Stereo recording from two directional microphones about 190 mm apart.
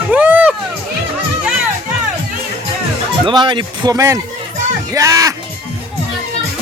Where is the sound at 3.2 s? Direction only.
25° right (ahead or behind).